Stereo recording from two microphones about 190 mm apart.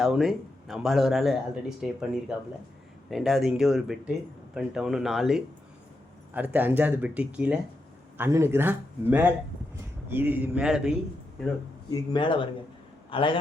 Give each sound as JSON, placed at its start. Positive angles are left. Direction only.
{"t": 0.0, "sound": "speech", "side_deg": 0}
{"t": 11.9, "sound": "a man's voice", "side_deg": 25}